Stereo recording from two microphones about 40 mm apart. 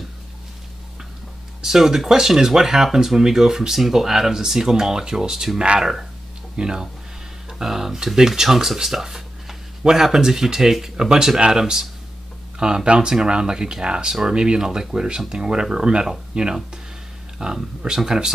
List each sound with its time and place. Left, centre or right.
1.6 s speech: centre